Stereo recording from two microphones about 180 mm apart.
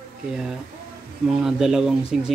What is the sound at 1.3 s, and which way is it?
Speech, centre (ahead or behind).